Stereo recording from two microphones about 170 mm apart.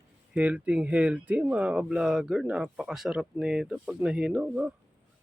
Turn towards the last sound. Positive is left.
turn(degrees=-5)  # may be behind; listen again after turning